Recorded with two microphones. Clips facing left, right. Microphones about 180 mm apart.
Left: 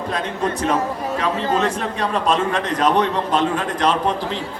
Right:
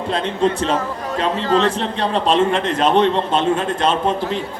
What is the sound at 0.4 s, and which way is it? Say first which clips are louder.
A man's voice: right 2 dB; 25° right (ahead or behind).